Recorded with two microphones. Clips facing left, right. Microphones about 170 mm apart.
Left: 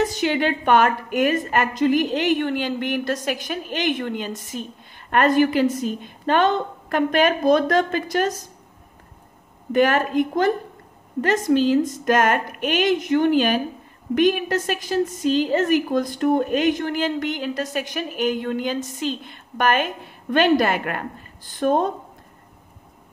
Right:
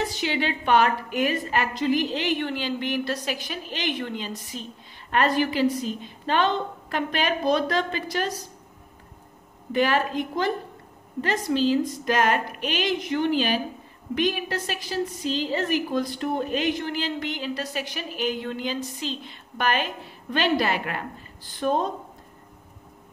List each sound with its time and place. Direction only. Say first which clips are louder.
0.0 s a woman's voice: left 6 dB; 50° left (ahead or behind)
9.7 s a woman's voice: left 4 dB; 50° left (ahead or behind)